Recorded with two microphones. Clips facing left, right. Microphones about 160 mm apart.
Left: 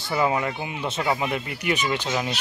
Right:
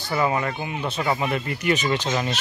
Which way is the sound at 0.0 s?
20° left (ahead or behind).